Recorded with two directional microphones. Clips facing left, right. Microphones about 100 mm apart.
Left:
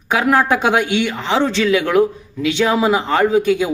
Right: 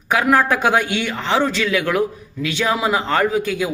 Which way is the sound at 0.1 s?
20° left (ahead or behind).